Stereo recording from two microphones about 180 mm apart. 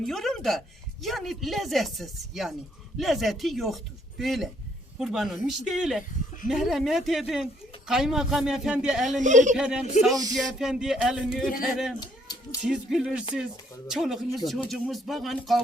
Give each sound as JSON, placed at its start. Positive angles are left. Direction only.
{"t": 0.0, "sound": "speech", "side_deg": 0}
{"t": 9.2, "sound": "speech", "side_deg": -45}
{"t": 9.6, "sound": "speech", "side_deg": -5}
{"t": 11.9, "sound": "a sound", "side_deg": 20}
{"t": 12.6, "sound": "speech", "side_deg": -5}